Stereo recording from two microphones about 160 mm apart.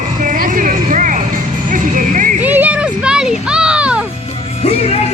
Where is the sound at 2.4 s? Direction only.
10° right (ahead or behind).